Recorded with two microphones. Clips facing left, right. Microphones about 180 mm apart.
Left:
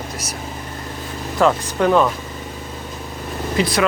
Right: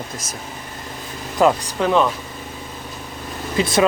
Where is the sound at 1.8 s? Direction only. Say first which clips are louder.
Left 3 dB; centre (ahead or behind).